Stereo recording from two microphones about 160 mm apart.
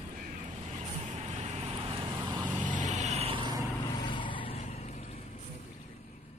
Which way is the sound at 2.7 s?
50° right (ahead or behind).